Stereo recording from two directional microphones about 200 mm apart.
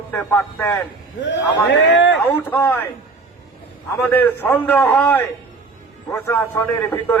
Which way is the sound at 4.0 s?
10° left (ahead or behind).